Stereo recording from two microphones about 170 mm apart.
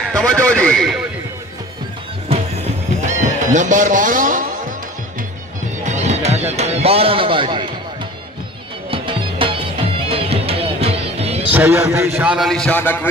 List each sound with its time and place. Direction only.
0.1 s a man's voice: 5° left (ahead or behind)
3.1 s music: 45° right (ahead or behind)
5.9 s music: 40° right (ahead or behind)
8.9 s music: 30° right (ahead or behind)
11.5 s a man's voice: 10° right (ahead or behind); by 13.1 s 10° left (ahead or behind)